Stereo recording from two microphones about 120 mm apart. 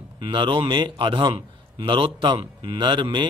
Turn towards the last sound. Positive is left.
turn(degrees=-40)  # may be behind; listen again after turning